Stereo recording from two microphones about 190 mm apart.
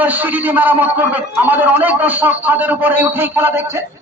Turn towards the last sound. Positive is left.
turn(degrees=-10)  # may be behind; listen again after turning